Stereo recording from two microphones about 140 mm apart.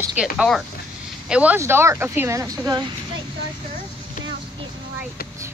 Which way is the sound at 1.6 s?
20° right (ahead or behind).